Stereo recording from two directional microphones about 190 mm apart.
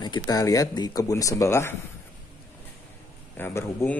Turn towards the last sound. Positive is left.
turn(degrees=10)  # may be behind; listen again after turning